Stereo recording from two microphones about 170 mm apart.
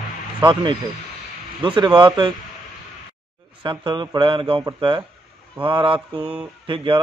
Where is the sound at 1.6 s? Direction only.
25° right (ahead or behind).